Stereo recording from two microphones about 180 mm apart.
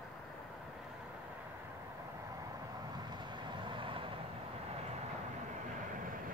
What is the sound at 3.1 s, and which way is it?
Vehicle, 25° right (ahead or behind).